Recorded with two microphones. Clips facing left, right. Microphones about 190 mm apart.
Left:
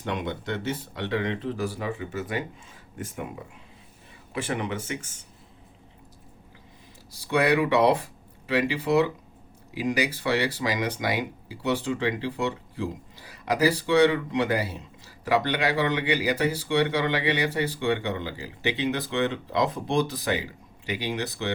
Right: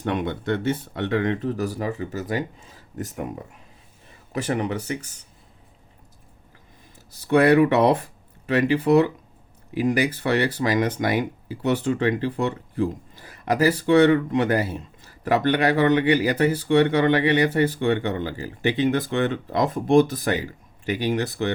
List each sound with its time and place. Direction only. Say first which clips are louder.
0.0 s speech: right 5 dB; 55° right (ahead or behind); by 5.2 s 35° right (ahead or behind)
7.2 s speech: right 6 dB; 50° right (ahead or behind)